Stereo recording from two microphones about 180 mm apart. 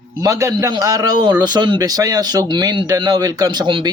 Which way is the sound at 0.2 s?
20° right (ahead or behind).